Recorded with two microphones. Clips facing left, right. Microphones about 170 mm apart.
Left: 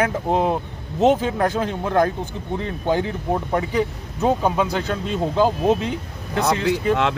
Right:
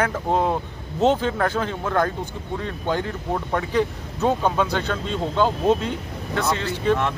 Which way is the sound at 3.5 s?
15° left (ahead or behind).